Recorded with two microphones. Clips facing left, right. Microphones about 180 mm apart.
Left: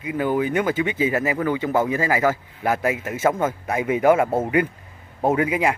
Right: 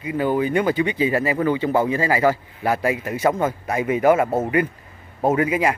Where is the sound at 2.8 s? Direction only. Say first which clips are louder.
Right 1 dB; 10° left (ahead or behind).